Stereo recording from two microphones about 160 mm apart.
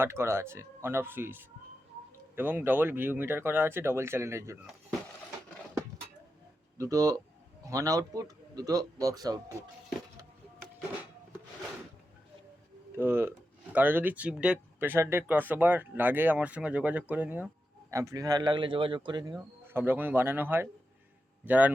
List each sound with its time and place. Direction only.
0.0 s speech: 15° right (ahead or behind)
6.7 s speech: 20° right (ahead or behind)
13.0 s speech: 15° right (ahead or behind)